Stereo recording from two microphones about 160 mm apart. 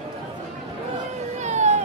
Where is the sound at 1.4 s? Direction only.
45° right (ahead or behind).